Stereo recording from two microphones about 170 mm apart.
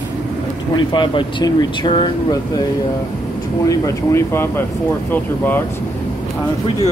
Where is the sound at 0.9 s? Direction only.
30° left (ahead or behind).